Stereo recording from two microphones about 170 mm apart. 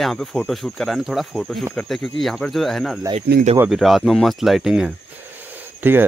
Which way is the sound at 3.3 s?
65° right (ahead or behind).